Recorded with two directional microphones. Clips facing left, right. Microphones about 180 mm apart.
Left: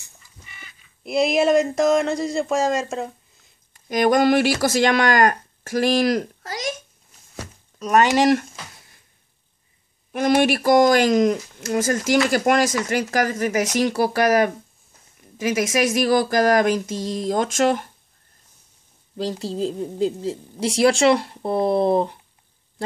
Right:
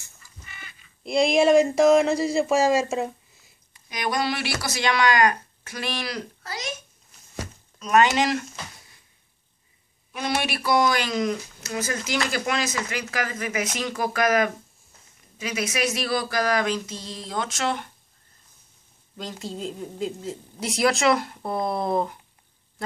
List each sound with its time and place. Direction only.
0.0 s speech: 10° left (ahead or behind)
3.7 s speech: 45° left (ahead or behind)
8.1 s speech: 50° left (ahead or behind)
10.1 s a woman's voice: 50° left (ahead or behind)
19.1 s a woman's voice: 35° left (ahead or behind)